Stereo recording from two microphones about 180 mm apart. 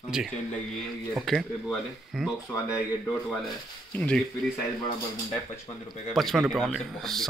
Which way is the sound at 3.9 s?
10° left (ahead or behind).